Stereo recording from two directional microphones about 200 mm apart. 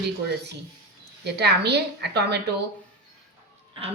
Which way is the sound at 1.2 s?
55° right (ahead or behind).